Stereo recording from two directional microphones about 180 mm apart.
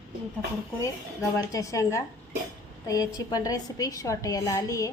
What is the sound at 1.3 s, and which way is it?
A woman's voice, 20° left (ahead or behind).